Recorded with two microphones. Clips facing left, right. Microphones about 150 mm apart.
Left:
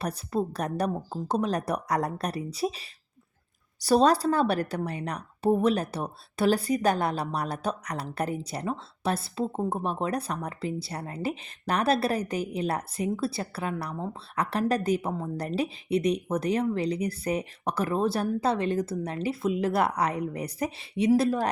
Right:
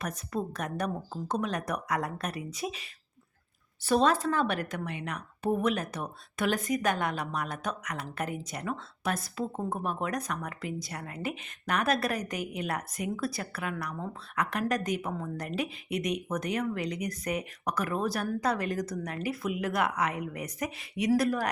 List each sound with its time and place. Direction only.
0.0 s speech: 35° left (ahead or behind)